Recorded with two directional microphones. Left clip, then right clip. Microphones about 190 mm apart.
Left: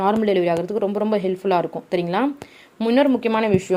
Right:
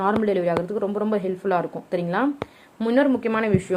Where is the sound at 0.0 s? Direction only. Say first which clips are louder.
Left 3 dB; 35° left (ahead or behind).